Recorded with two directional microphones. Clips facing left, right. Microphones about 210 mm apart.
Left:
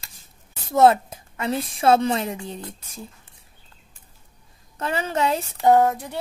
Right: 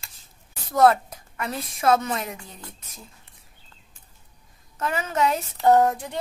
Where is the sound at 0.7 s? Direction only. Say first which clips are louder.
Left 2 dB; 25° left (ahead or behind).